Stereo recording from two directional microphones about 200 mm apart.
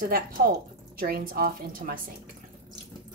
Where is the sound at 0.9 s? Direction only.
45° right (ahead or behind).